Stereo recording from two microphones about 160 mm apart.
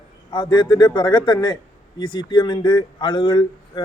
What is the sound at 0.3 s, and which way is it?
Speech, 25° left (ahead or behind).